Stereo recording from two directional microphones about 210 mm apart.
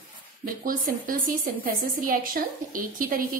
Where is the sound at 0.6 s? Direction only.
40° right (ahead or behind).